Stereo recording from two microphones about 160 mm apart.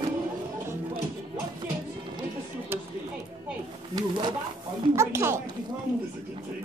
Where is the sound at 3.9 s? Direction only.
25° right (ahead or behind).